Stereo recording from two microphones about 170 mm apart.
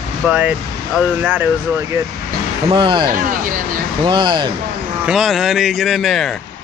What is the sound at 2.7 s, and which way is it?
Speech, 30° right (ahead or behind).